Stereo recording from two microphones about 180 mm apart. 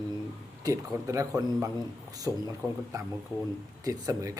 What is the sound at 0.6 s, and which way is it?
A man's voice, 20° right (ahead or behind).